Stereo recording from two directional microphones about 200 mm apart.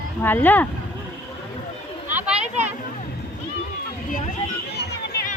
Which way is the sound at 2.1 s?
10° right (ahead or behind).